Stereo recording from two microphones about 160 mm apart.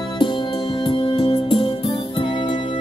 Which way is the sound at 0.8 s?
30° left (ahead or behind).